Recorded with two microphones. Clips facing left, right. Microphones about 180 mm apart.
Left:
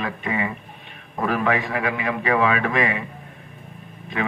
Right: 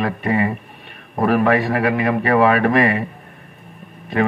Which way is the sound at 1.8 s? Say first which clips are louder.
Right 7 dB; 40° right (ahead or behind).